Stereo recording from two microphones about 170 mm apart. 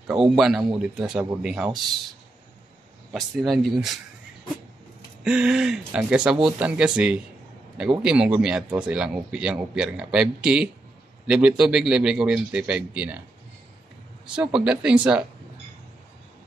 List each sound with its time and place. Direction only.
0.0 s speech: 5° right (ahead or behind)
3.1 s speech: centre (ahead or behind)
5.2 s speech: 5° right (ahead or behind)
14.3 s speech: 5° right (ahead or behind)